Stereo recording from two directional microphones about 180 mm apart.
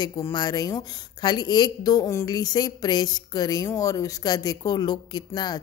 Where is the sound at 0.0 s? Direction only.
20° left (ahead or behind).